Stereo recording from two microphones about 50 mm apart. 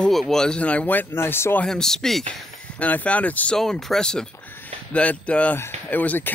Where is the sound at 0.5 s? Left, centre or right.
Left.